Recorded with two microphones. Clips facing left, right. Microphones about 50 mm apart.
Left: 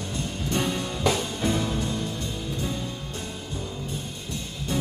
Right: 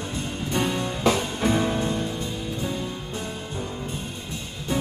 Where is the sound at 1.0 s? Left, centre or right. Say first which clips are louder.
Right 3 dB; right.